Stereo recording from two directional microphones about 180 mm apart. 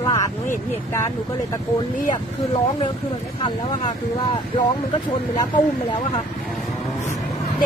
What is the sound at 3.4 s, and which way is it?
Speech, 25° left (ahead or behind).